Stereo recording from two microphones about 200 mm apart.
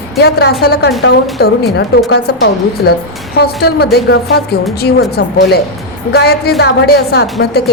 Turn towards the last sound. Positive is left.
turn(degrees=50)  # may be behind; listen again after turning